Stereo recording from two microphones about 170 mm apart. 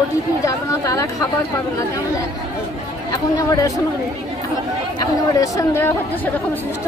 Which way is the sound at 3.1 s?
20° left (ahead or behind).